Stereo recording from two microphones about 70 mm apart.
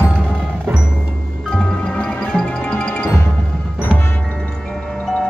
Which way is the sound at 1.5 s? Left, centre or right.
Centre.